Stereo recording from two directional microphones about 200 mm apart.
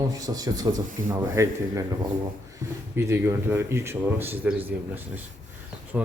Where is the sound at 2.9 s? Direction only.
15° right (ahead or behind).